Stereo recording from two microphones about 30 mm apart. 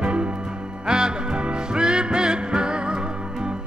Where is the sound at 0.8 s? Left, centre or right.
Right.